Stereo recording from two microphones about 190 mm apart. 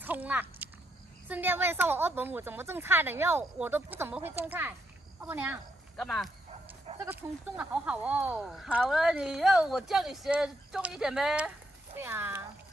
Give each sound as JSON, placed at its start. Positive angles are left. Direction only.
{"t": 0.0, "sound": "biting", "side_deg": -10}
{"t": 1.3, "sound": "a woman's voice", "side_deg": -10}
{"t": 5.9, "sound": "speech", "side_deg": 0}
{"t": 7.1, "sound": "a woman's voice", "side_deg": -10}